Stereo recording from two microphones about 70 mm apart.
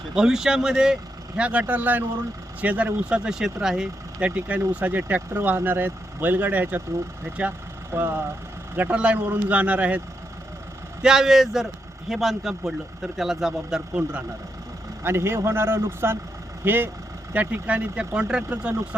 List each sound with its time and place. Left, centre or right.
0.1 s speech: centre
1.4 s speech: centre
3.2 s speech: centre
4.3 s speech: right
7.9 s a man's voice: right
11.0 s a man's voice: centre
15.0 s a man's voice: right; by 18.4 s centre